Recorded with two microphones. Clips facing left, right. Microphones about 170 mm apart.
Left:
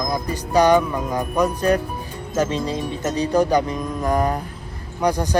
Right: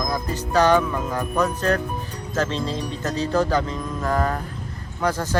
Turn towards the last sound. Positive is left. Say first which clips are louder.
# left 3 dB
turn(degrees=15)  # may be behind; listen again after turning